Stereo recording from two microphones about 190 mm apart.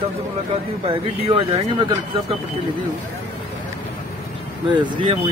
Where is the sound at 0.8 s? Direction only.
30° right (ahead or behind).